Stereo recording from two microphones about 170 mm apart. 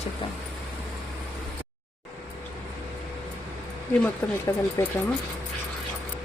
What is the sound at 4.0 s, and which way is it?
Speech, 10° left (ahead or behind).